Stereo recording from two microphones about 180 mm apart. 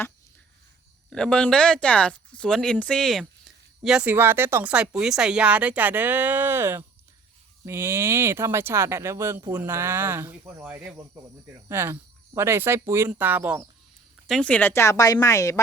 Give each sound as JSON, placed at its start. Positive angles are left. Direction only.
{"t": 1.1, "sound": "speech", "side_deg": 5}
{"t": 14.3, "sound": "speech", "side_deg": 5}